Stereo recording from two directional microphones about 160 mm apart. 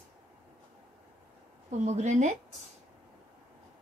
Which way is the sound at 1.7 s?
45° right (ahead or behind).